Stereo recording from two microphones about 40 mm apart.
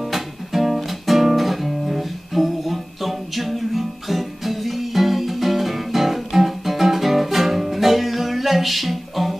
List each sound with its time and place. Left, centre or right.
0.0 s music: centre